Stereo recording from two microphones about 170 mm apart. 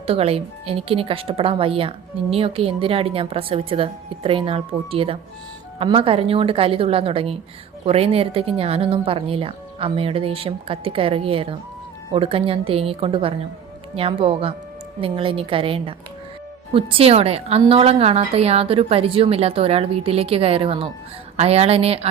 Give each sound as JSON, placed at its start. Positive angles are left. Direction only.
{"t": 0.1, "sound": "speech", "side_deg": -35}